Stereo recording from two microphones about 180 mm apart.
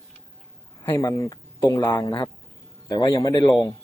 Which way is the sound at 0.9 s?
15° left (ahead or behind).